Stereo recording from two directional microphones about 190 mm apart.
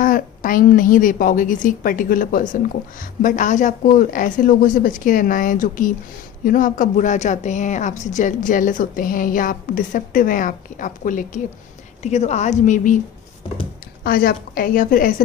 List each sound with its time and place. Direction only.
0.0 s a woman's voice: 45° left (ahead or behind)
14.0 s a woman's voice: 50° left (ahead or behind)